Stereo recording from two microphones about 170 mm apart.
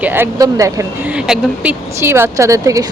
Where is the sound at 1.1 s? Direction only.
5° right (ahead or behind).